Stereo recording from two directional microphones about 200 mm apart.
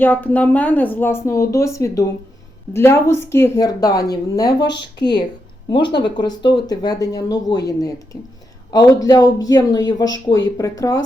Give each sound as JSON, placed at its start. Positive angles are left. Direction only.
{"t": 0.0, "sound": "speech", "side_deg": 10}